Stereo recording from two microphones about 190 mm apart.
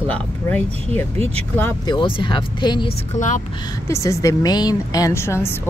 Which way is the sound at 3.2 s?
40° left (ahead or behind).